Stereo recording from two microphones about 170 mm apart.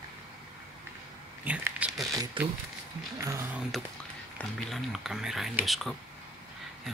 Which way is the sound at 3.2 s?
15° right (ahead or behind).